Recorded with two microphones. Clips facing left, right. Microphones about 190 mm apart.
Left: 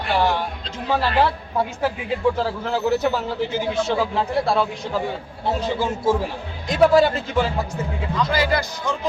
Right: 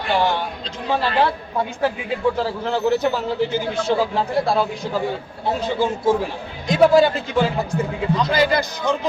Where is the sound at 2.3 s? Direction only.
Centre (ahead or behind).